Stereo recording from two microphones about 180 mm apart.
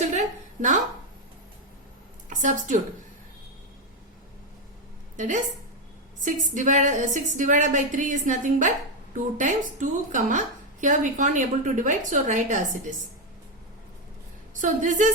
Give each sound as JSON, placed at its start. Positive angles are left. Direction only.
{"t": 2.3, "sound": "speech", "side_deg": -45}
{"t": 5.1, "sound": "a woman's voice", "side_deg": -45}
{"t": 14.6, "sound": "a woman's voice", "side_deg": -45}